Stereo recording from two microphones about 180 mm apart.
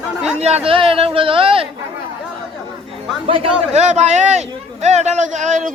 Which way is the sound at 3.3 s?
35° right (ahead or behind).